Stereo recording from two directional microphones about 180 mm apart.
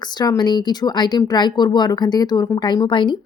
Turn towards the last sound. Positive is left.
turn(degrees=25)  # may be behind; listen again after turning